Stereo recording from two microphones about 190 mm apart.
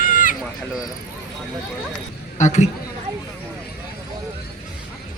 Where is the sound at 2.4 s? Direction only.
40° left (ahead or behind).